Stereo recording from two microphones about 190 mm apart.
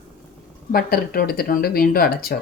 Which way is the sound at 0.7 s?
50° left (ahead or behind).